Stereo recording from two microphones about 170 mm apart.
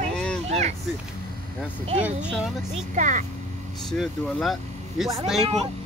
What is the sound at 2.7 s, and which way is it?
Speech, 45° right (ahead or behind).